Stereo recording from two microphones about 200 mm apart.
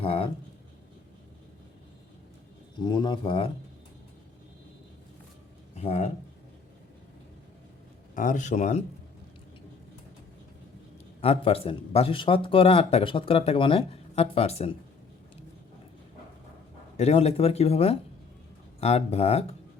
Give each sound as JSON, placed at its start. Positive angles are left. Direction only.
{"t": 0.0, "sound": "speech", "side_deg": 30}
{"t": 2.8, "sound": "speech", "side_deg": 20}
{"t": 5.7, "sound": "speech", "side_deg": 35}
{"t": 8.1, "sound": "speech", "side_deg": 40}
{"t": 11.2, "sound": "speech", "side_deg": 30}
{"t": 17.0, "sound": "speech", "side_deg": 30}